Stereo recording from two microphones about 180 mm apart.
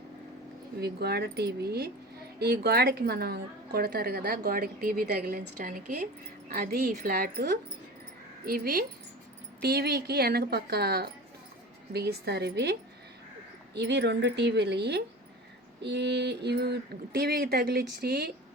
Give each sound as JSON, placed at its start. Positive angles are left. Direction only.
{"t": 0.8, "sound": "a woman's voice", "side_deg": -60}
{"t": 13.7, "sound": "a woman's voice", "side_deg": -70}